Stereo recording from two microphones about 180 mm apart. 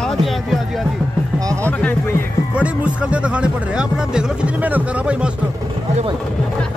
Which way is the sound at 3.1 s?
5° right (ahead or behind).